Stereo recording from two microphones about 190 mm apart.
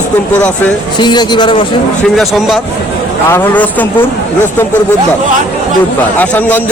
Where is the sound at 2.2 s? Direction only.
Centre (ahead or behind).